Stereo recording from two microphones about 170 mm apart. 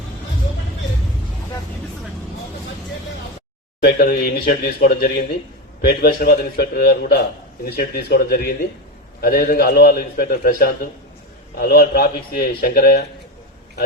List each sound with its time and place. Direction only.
3.8 s a man's voice: 65° left (ahead or behind)